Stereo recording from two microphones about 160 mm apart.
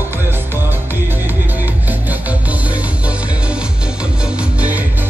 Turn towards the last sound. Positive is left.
turn(degrees=-10)  # may be behind; listen again after turning